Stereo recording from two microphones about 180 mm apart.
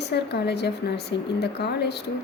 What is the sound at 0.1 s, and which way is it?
A woman's voice, 65° left (ahead or behind).